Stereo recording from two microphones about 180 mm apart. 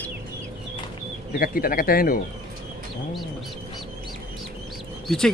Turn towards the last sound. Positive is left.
turn(degrees=5)  # may be behind; listen again after turning